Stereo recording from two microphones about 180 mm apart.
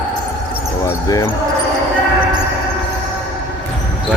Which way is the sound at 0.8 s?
15° left (ahead or behind).